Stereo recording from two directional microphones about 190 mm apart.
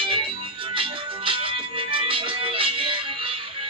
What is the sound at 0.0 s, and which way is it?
Music, 25° right (ahead or behind).